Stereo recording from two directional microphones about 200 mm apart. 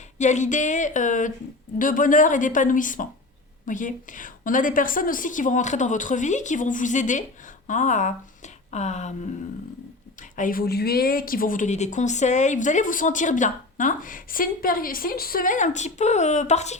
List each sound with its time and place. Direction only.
0.2 s speech: 35° left (ahead or behind)
10.3 s speech: 45° left (ahead or behind)